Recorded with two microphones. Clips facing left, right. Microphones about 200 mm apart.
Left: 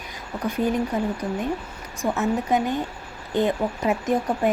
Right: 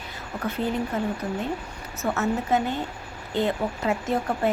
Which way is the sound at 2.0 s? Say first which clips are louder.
Left 2 dB; 15° left (ahead or behind).